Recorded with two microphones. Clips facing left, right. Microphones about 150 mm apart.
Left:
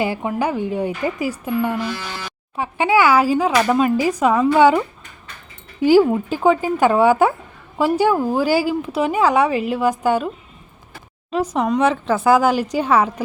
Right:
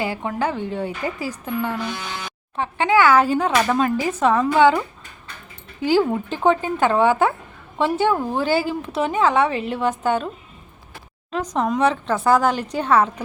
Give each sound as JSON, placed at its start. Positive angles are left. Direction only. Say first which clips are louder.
{"t": 0.0, "sound": "speech", "louder": "left 3 dB", "side_deg": 15}
{"t": 5.8, "sound": "speech", "louder": "left 5 dB", "side_deg": 10}
{"t": 11.3, "sound": "speech", "louder": "left 3 dB", "side_deg": 10}